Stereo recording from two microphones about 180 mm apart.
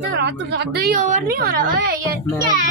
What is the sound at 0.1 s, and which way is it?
A woman's voice, 70° right (ahead or behind).